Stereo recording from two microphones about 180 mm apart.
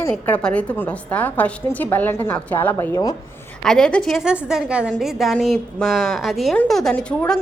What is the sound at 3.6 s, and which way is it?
A woman's voice, 5° left (ahead or behind).